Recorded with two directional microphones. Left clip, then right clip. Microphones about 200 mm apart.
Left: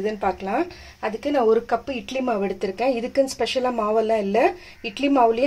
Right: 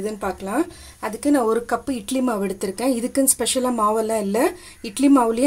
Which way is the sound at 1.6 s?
50° right (ahead or behind).